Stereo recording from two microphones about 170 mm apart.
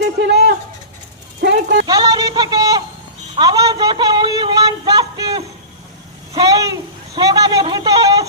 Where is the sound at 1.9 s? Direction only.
20° right (ahead or behind).